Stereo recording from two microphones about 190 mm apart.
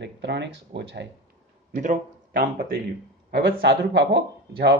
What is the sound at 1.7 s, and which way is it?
Speech, 40° right (ahead or behind).